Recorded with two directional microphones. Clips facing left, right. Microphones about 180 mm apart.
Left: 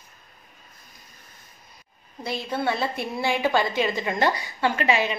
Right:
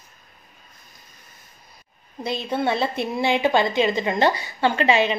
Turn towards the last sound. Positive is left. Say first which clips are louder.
# right 4 dB
turn(degrees=-25)  # may be behind; listen again after turning